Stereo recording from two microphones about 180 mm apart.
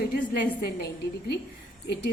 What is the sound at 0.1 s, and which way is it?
Speech, 55° left (ahead or behind).